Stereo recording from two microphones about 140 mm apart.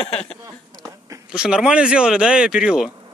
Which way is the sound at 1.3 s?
5° right (ahead or behind).